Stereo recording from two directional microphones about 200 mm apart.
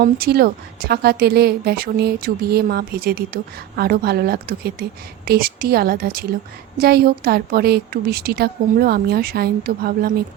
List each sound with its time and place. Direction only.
0.0 s speech: 50° right (ahead or behind)